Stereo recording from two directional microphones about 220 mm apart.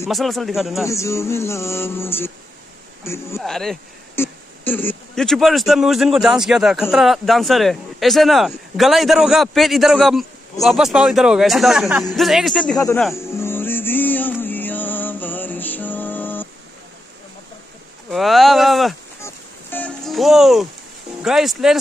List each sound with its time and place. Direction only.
0.1 s speech: centre (ahead or behind)
0.8 s a man's voice: 15° left (ahead or behind)
3.3 s speech: centre (ahead or behind)
13.1 s music: 10° left (ahead or behind)
18.1 s speech: centre (ahead or behind)
19.2 s music: 10° left (ahead or behind)
21.2 s speech: centre (ahead or behind)